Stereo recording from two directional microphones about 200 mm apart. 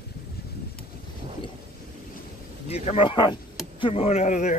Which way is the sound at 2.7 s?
30° left (ahead or behind).